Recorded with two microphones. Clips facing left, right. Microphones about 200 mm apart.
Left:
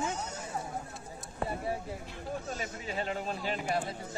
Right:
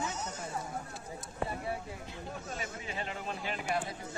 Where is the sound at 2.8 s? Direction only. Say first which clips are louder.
Left 7 dB; 40° left (ahead or behind).